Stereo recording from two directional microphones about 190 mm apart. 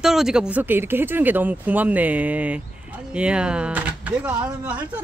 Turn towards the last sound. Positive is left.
turn(degrees=-10)  # may be behind; listen again after turning